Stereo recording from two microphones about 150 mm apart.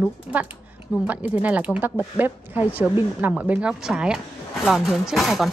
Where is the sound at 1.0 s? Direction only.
10° right (ahead or behind).